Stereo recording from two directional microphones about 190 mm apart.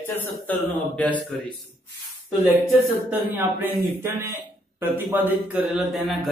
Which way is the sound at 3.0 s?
10° right (ahead or behind).